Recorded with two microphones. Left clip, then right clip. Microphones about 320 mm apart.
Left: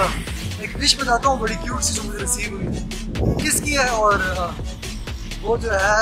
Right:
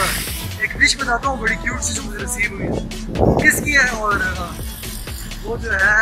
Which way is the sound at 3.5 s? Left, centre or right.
Centre.